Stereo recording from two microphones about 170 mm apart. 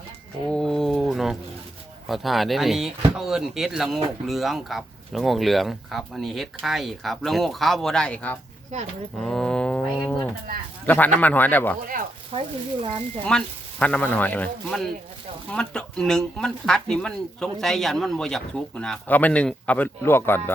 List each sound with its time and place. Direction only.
0.4 s a sound: 5° left (ahead or behind)
2.0 s speech: centre (ahead or behind)
8.7 s speech: 45° right (ahead or behind)
9.2 s a sound: 5° left (ahead or behind)
10.8 s speech: 10° left (ahead or behind)
12.3 s speech: 30° right (ahead or behind)
13.2 s speech: 5° left (ahead or behind)